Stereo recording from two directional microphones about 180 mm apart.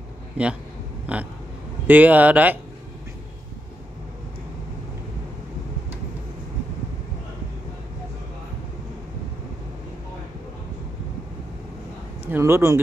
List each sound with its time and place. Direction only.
0.4 s speech: 5° right (ahead or behind)
12.3 s speech: 15° right (ahead or behind)